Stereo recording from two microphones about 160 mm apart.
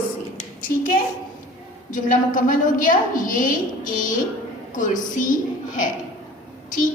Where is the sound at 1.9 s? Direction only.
55° left (ahead or behind).